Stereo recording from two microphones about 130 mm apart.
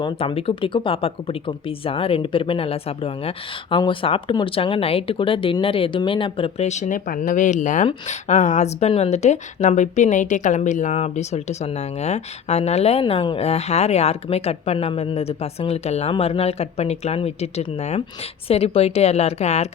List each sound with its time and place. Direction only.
0.0 s speech: 40° left (ahead or behind)
6.7 s a woman's voice: 70° left (ahead or behind)